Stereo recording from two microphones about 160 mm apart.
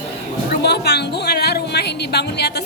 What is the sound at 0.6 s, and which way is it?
A woman's voice, 90° left.